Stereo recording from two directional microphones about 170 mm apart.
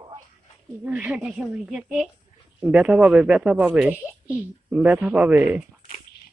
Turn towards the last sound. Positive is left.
turn(degrees=-10)  # may be behind; listen again after turning